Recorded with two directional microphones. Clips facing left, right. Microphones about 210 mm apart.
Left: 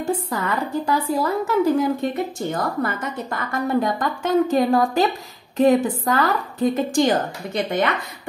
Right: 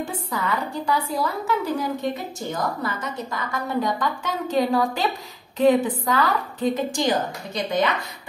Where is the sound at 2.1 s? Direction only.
55° left (ahead or behind).